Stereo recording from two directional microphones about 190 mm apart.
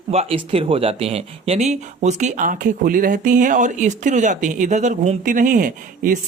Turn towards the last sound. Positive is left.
turn(degrees=-45)  # may be behind; listen again after turning